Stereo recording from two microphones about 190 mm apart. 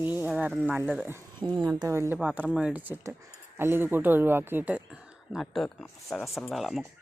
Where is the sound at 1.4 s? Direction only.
25° right (ahead or behind).